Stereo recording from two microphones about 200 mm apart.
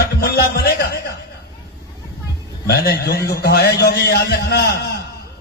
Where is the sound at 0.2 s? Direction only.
50° left (ahead or behind).